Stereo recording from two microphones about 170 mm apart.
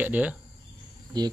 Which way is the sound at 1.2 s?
25° right (ahead or behind).